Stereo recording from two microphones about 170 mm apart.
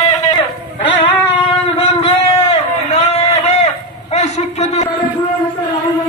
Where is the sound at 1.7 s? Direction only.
35° left (ahead or behind).